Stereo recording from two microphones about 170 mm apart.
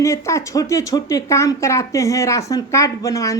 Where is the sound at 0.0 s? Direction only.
15° left (ahead or behind).